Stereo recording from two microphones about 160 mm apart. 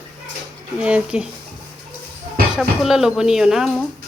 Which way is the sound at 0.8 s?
5° right (ahead or behind).